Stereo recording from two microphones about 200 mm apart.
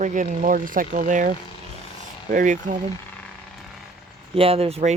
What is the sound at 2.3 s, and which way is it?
Speech, 40° right (ahead or behind).